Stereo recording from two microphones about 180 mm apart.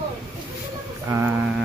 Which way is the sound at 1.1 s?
10° right (ahead or behind).